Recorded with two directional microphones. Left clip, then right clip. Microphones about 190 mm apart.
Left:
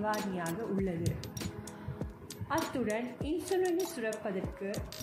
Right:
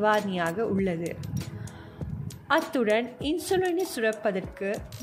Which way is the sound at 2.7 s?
55° right (ahead or behind).